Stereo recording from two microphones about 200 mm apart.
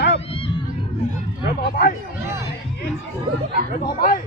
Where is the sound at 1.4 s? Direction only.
50° left (ahead or behind).